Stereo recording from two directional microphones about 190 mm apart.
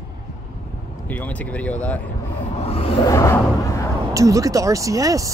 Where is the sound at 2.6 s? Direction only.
30° left (ahead or behind).